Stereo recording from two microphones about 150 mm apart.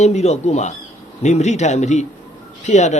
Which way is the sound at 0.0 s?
50° left (ahead or behind).